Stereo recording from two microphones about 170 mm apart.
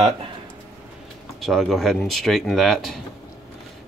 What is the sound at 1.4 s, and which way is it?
Speech, centre (ahead or behind).